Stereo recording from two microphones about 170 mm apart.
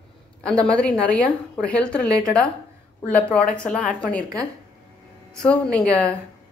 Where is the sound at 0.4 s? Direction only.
5° left (ahead or behind).